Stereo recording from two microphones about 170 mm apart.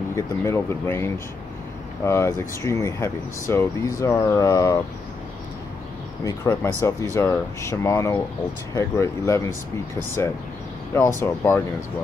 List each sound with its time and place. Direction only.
0.1 s speech: 15° left (ahead or behind)
6.2 s speech: 20° left (ahead or behind)
11.0 s speech: 15° left (ahead or behind)